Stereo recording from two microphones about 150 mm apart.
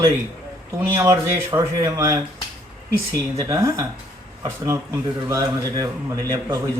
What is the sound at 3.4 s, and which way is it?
A man's voice, 20° right (ahead or behind).